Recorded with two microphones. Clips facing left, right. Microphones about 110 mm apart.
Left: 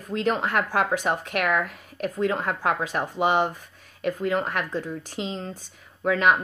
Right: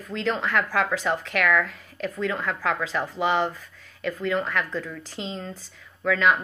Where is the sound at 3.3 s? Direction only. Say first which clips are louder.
Left 1 dB; 20° left (ahead or behind).